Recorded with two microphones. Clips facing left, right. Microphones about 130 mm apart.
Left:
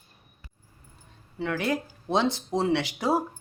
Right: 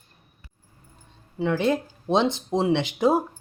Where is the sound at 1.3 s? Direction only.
20° right (ahead or behind).